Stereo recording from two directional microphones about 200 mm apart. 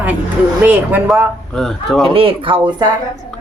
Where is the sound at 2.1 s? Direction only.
25° right (ahead or behind).